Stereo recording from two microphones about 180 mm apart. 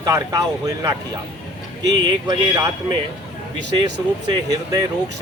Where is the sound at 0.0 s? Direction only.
20° right (ahead or behind).